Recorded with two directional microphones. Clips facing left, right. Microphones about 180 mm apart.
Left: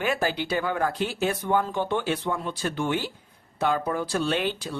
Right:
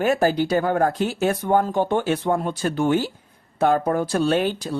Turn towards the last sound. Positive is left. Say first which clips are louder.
# right 6 dB
turn(degrees=-45)  # may be behind; listen again after turning